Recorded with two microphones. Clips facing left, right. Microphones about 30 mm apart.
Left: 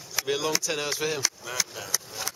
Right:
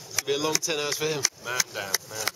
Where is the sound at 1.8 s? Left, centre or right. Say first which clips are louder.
Right 3 dB; right.